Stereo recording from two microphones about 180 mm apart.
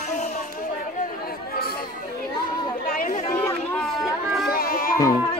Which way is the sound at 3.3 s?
10° left (ahead or behind).